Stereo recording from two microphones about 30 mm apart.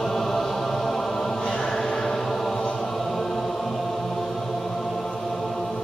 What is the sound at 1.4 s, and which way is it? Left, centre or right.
Choir, centre.